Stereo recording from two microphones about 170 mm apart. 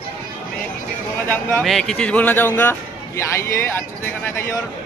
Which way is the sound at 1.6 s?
Centre (ahead or behind).